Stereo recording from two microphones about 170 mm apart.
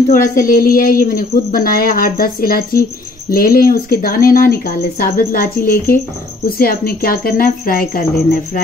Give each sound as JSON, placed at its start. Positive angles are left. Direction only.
{"t": 0.1, "sound": "speech", "side_deg": 55}